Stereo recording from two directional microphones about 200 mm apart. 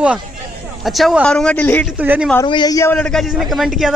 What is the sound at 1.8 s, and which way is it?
Speech, 5° right (ahead or behind).